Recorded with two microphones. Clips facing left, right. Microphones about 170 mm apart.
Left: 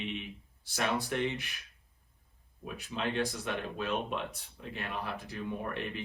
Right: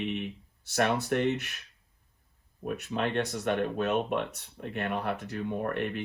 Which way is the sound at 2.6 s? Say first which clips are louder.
Right 5 dB; 60° right (ahead or behind).